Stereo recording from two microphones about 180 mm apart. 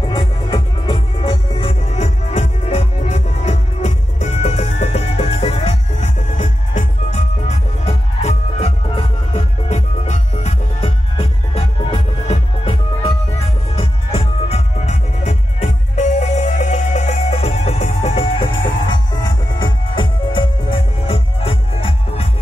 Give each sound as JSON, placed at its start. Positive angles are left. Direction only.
{"t": 0.1, "sound": "music", "side_deg": 30}